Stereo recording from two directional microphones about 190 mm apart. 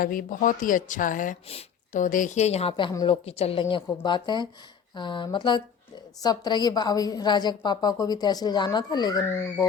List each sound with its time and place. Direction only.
0.0 s a woman's voice: 45° left (ahead or behind); by 9.6 s 20° left (ahead or behind)